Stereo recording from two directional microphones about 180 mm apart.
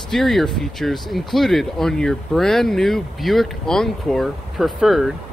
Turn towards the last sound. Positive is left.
turn(degrees=0)  # may be behind; listen again after turning